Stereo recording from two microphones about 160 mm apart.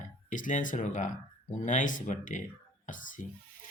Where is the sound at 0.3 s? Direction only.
55° left (ahead or behind).